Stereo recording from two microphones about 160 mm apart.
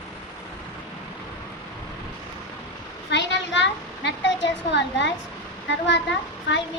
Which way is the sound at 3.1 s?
90° left.